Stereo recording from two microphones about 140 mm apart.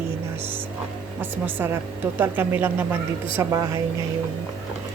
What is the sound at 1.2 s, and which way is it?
A woman's voice, 15° right (ahead or behind).